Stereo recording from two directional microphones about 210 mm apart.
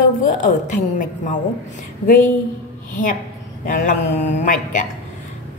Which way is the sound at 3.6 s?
40° left (ahead or behind).